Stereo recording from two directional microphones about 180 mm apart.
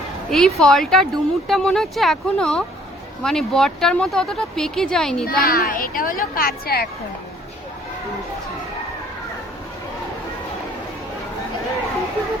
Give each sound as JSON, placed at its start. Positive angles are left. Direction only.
{"t": 0.3, "sound": "speech", "side_deg": 0}
{"t": 5.2, "sound": "speech", "side_deg": 55}